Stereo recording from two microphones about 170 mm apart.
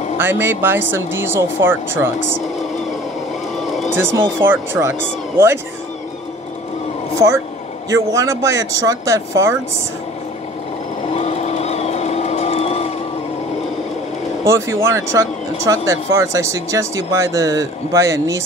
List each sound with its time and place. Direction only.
0.2 s speech: 15° right (ahead or behind)
3.5 s a sound: centre (ahead or behind)
3.9 s speech: 10° right (ahead or behind)
7.2 s speech: 20° right (ahead or behind)
11.1 s vehicle: 40° left (ahead or behind)
14.4 s speech: 15° right (ahead or behind)